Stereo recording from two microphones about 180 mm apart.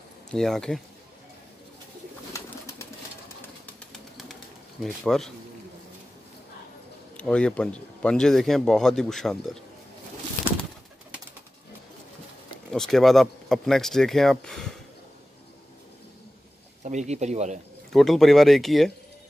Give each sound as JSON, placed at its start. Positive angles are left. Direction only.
{"t": 0.3, "sound": "speech", "side_deg": 5}
{"t": 2.3, "sound": "bird", "side_deg": 15}
{"t": 3.6, "sound": "bird", "side_deg": 0}
{"t": 4.8, "sound": "speech", "side_deg": 0}
{"t": 7.2, "sound": "speech", "side_deg": 5}
{"t": 12.7, "sound": "speech", "side_deg": 0}
{"t": 16.8, "sound": "speech", "side_deg": -40}
{"t": 17.9, "sound": "speech", "side_deg": 0}